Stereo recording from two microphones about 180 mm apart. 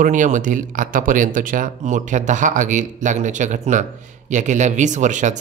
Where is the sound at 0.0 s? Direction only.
45° right (ahead or behind).